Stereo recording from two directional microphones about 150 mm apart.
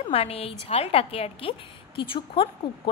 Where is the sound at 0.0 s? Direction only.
40° left (ahead or behind).